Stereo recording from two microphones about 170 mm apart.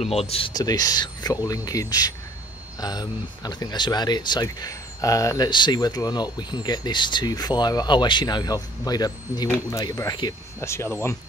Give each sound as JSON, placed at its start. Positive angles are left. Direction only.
{"t": 0.0, "sound": "speech", "side_deg": 35}